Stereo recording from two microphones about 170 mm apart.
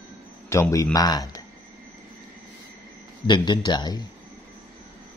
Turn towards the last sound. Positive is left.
turn(degrees=25)  # may be behind; listen again after turning